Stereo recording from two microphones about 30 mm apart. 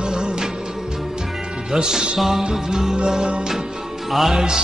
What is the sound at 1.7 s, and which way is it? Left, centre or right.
Music, right.